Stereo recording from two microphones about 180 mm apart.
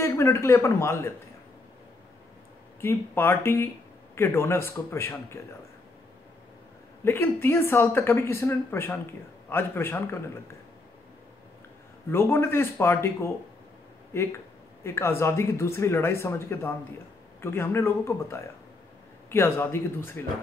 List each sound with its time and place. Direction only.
0.0 s speech: 15° left (ahead or behind)
2.8 s speech: 15° left (ahead or behind)
7.1 s speech: 10° left (ahead or behind)
12.1 s speech: 15° left (ahead or behind)